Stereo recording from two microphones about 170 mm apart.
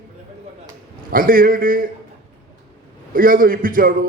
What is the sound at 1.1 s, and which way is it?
Speech, 55° right (ahead or behind).